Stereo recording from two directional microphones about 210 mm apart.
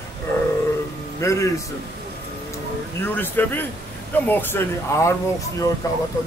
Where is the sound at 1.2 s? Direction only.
15° left (ahead or behind).